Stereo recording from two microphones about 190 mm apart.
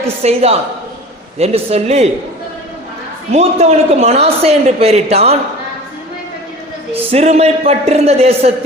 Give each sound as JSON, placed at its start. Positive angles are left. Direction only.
{"t": 0.2, "sound": "a man's voice", "side_deg": -35}
{"t": 3.3, "sound": "a man's voice", "side_deg": -35}
{"t": 6.9, "sound": "a man's voice", "side_deg": -30}